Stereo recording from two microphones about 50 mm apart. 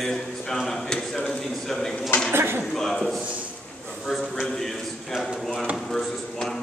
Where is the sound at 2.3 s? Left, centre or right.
Right.